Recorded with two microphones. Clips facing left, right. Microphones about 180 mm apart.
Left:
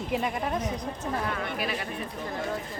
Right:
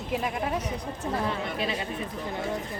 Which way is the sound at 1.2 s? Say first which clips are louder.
Right 2 dB; 25° right (ahead or behind).